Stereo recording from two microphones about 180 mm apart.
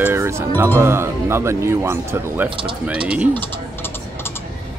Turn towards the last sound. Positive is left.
turn(degrees=10)  # may be behind; listen again after turning